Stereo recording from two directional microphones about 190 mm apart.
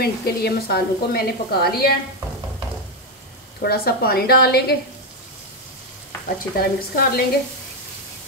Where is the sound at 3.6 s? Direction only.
55° left (ahead or behind).